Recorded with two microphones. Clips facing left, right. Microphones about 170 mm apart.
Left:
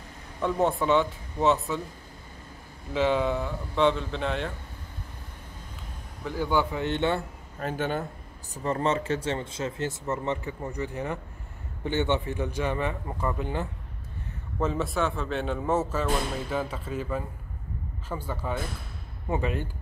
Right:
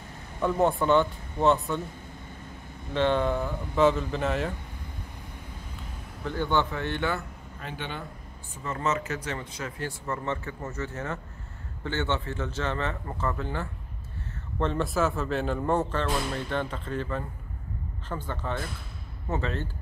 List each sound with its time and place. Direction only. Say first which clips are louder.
0.4 s speech: right 1 dB; centre (ahead or behind)
2.9 s speech: even; 5° left (ahead or behind)
6.2 s a man's voice: even; 5° left (ahead or behind); by 7.2 s 25° left (ahead or behind)
7.6 s a man's voice: left 8 dB; 45° left (ahead or behind)
8.6 s a man's voice: left 3 dB; 35° left (ahead or behind); by 13.7 s 15° left (ahead or behind)
14.6 s a man's voice: right 1 dB; 5° left (ahead or behind)